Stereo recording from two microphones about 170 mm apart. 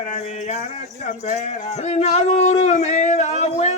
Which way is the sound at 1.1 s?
45° left (ahead or behind).